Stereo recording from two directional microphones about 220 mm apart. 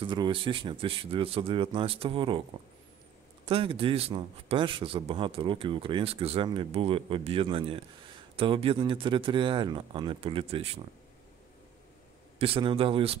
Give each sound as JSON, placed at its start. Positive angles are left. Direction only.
{"t": 0.0, "sound": "a man's voice", "side_deg": -20}
{"t": 3.4, "sound": "a man's voice", "side_deg": -25}
{"t": 12.4, "sound": "a man's voice", "side_deg": -25}